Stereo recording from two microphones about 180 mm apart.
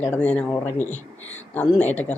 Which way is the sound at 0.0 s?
10° left (ahead or behind).